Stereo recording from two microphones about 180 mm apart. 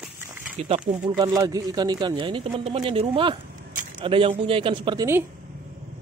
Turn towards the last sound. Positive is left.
turn(degrees=-25)  # may be behind; listen again after turning